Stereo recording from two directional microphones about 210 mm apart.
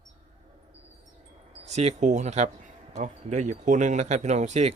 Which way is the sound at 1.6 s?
30° right (ahead or behind).